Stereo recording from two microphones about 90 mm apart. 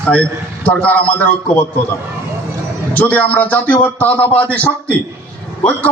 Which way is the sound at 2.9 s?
15° left (ahead or behind).